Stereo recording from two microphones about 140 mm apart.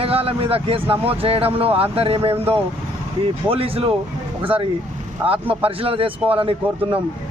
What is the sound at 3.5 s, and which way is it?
Speech, 40° right (ahead or behind).